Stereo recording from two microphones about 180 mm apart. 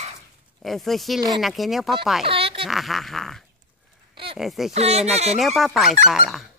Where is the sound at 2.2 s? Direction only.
30° right (ahead or behind).